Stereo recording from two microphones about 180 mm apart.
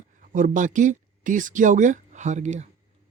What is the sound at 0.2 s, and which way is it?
Speech, 45° right (ahead or behind).